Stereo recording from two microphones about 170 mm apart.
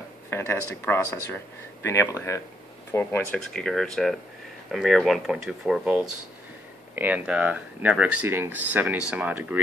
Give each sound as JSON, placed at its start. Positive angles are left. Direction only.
{"t": 0.3, "sound": "speech", "side_deg": 15}
{"t": 3.5, "sound": "speech", "side_deg": 0}